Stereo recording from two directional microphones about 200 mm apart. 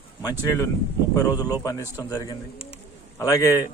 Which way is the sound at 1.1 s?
20° left (ahead or behind).